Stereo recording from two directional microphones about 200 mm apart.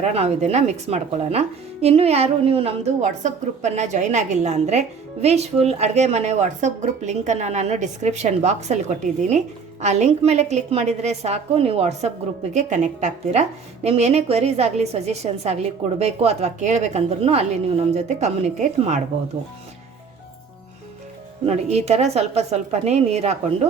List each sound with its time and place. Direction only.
0.0 s speech: 30° right (ahead or behind)
21.4 s speech: 30° right (ahead or behind)